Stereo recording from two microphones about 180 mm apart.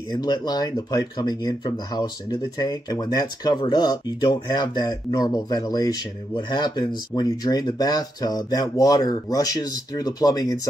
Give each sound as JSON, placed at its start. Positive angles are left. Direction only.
{"t": 0.1, "sound": "speech", "side_deg": 25}